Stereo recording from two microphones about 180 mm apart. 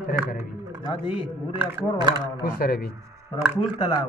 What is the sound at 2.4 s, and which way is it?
Speech, 55° left (ahead or behind).